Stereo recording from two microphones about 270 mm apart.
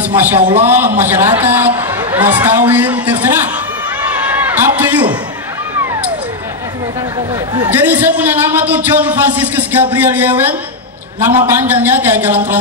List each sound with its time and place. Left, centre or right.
0.1 s a man's voice: centre
0.4 s a man's voice: centre
0.9 s a man's voice: centre
4.1 s a sound: centre
7.5 s a man's voice: centre